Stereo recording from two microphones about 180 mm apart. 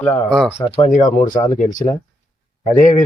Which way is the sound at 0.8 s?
40° left (ahead or behind).